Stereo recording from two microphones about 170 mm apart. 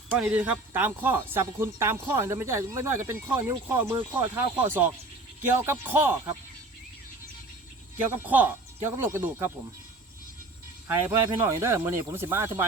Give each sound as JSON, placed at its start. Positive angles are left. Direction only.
{"t": 0.2, "sound": "speech", "side_deg": -10}
{"t": 7.9, "sound": "speech", "side_deg": -10}
{"t": 10.8, "sound": "speech", "side_deg": -15}